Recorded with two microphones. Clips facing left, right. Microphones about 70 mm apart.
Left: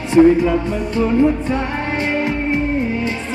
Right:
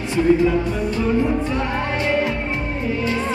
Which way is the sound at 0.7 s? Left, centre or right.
Left.